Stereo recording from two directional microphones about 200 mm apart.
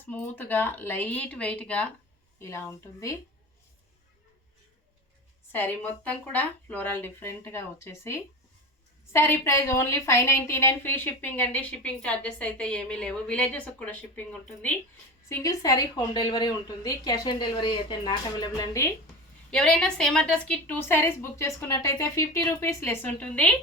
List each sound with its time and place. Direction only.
0.0 s a woman's voice: 10° left (ahead or behind)
5.5 s a woman's voice: 10° left (ahead or behind)
19.5 s a woman's voice: 5° left (ahead or behind)